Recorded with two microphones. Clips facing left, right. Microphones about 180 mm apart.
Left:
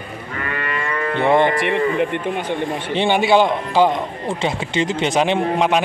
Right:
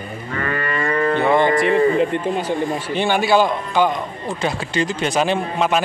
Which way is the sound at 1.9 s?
60° left (ahead or behind).